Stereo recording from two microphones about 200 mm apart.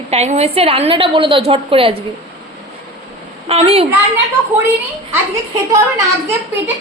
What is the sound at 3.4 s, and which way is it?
Speech, 30° right (ahead or behind).